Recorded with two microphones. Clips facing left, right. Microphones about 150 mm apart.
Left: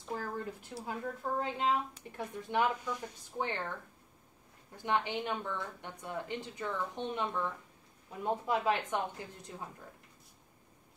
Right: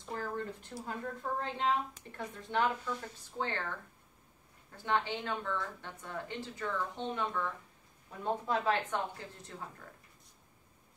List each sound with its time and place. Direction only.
0.0 s a woman's voice: 5° left (ahead or behind)
4.8 s a woman's voice: 15° left (ahead or behind)